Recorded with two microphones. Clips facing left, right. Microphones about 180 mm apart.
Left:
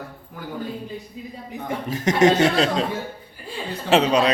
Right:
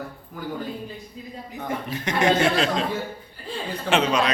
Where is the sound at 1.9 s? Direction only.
40° left (ahead or behind).